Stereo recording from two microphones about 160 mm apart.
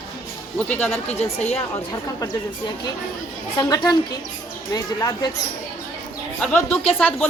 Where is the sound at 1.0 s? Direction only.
40° left (ahead or behind).